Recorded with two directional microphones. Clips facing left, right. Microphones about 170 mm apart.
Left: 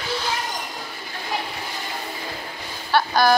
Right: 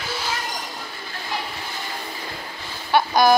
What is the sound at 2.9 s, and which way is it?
Speech, 15° right (ahead or behind).